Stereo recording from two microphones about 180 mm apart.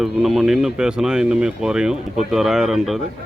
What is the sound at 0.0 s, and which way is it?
Speech, centre (ahead or behind).